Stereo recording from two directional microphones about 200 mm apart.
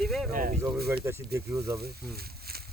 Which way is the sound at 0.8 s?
10° right (ahead or behind).